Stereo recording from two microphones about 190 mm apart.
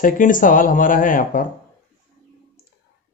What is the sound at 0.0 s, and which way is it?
Speech, 45° left (ahead or behind).